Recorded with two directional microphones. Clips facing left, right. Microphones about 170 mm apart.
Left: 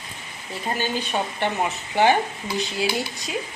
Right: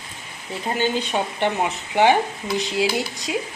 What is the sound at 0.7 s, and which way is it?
Speech, 15° right (ahead or behind).